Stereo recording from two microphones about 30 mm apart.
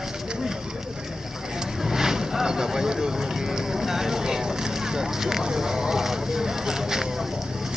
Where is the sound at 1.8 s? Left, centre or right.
Centre.